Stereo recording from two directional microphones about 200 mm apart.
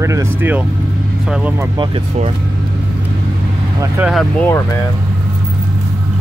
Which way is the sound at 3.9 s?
5° right (ahead or behind).